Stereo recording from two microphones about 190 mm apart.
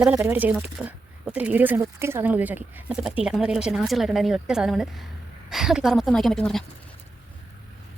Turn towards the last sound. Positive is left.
turn(degrees=0)  # may be behind; listen again after turning